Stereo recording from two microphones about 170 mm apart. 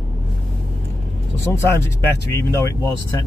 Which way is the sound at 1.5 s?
15° left (ahead or behind).